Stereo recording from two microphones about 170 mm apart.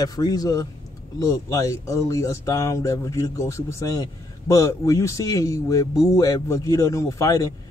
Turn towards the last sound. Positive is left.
turn(degrees=20)  # may be behind; listen again after turning